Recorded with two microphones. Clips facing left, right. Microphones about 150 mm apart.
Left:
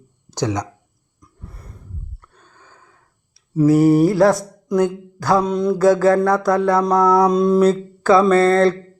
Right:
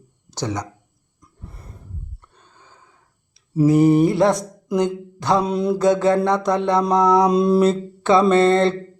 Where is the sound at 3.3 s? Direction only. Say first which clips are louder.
Left 2 dB; 15° right (ahead or behind).